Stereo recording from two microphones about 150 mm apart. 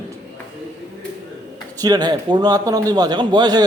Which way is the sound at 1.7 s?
25° right (ahead or behind).